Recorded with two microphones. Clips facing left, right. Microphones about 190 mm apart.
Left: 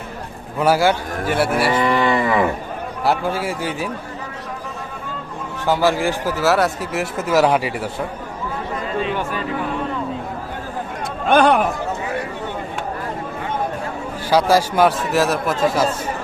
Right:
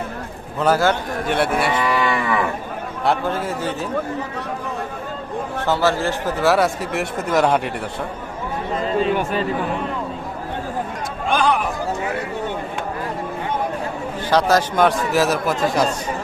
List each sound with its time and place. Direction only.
0.6 s speech: 10° left (ahead or behind)
1.7 s cattle: 30° left (ahead or behind)
3.0 s speech: 5° left (ahead or behind)
5.6 s speech: 15° left (ahead or behind)
6.4 s a man's voice: centre (ahead or behind)
11.3 s speech: 55° left (ahead or behind)
14.3 s a man's voice: 10° left (ahead or behind)